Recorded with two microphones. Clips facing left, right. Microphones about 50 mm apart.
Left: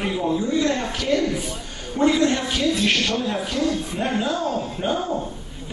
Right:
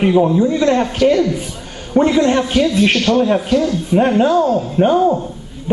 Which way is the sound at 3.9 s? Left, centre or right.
Right.